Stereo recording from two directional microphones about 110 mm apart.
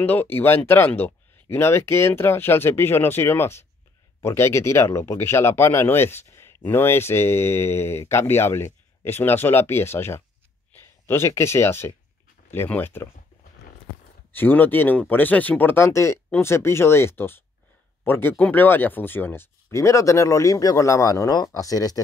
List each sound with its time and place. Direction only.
0.0 s speech: 15° left (ahead or behind)
14.3 s speech: 15° left (ahead or behind); by 22.0 s 35° left (ahead or behind)